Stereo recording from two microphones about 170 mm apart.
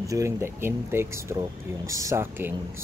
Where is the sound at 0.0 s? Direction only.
20° right (ahead or behind).